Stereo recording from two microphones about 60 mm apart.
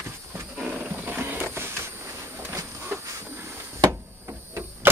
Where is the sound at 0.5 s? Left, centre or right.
Right.